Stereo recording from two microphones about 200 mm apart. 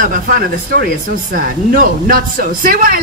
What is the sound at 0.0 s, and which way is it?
Speech, 45° right (ahead or behind).